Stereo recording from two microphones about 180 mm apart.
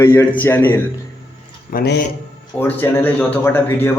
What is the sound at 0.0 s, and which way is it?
Speech, 15° left (ahead or behind).